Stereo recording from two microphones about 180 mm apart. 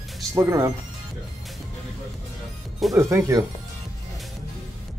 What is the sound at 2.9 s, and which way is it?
Speech, 15° right (ahead or behind).